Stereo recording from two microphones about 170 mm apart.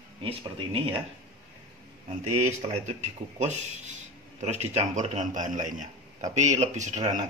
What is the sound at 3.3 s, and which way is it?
Speech, 45° right (ahead or behind).